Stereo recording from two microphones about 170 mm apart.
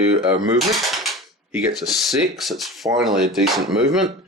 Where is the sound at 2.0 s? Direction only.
Centre (ahead or behind).